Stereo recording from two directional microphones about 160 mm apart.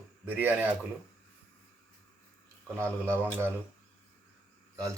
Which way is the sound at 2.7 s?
15° right (ahead or behind).